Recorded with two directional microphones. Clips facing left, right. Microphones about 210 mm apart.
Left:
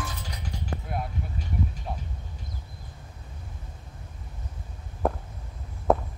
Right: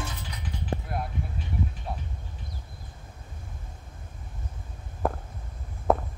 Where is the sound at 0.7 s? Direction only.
30° right (ahead or behind).